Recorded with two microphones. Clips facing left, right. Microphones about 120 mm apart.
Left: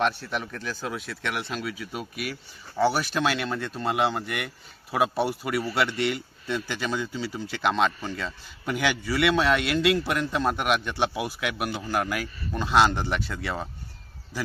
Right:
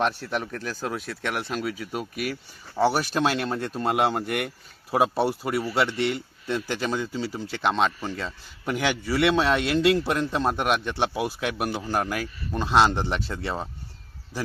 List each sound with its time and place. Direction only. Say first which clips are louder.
0.0 s speech: right 1 dB; 40° right (ahead or behind)